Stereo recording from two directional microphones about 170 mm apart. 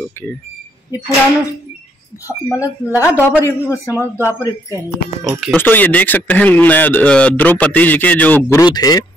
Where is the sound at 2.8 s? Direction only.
15° left (ahead or behind).